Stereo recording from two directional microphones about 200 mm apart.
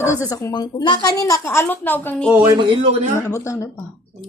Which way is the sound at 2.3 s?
15° right (ahead or behind).